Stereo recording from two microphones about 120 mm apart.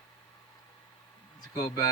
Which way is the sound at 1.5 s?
30° left (ahead or behind).